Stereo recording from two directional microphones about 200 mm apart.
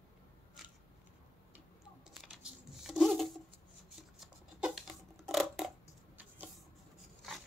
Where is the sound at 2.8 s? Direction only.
Centre (ahead or behind).